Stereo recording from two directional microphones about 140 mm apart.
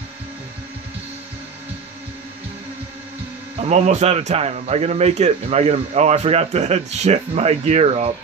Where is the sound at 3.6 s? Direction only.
50° right (ahead or behind).